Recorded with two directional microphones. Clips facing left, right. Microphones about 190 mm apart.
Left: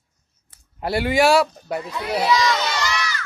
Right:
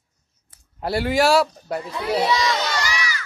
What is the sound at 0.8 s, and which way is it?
A man's voice, centre (ahead or behind).